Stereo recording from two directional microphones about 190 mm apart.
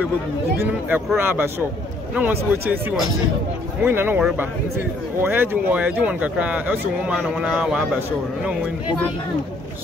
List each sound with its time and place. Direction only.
0.6 s speech: 10° right (ahead or behind)
3.8 s speech: 10° right (ahead or behind)